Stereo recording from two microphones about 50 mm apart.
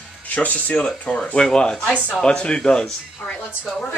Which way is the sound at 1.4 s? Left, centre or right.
Centre.